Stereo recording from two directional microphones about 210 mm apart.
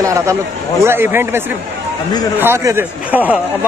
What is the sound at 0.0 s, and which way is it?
Speech, 15° right (ahead or behind).